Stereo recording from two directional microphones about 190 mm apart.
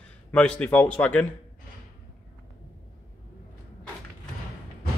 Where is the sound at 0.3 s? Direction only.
5° left (ahead or behind).